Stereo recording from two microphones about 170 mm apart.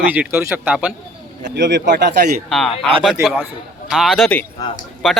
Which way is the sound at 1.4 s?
90° right.